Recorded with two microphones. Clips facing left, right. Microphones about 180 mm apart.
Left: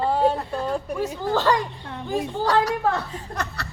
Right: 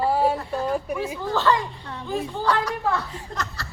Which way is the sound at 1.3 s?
40° left (ahead or behind).